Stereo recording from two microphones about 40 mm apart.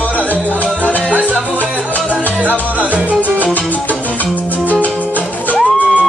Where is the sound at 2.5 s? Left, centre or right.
Left.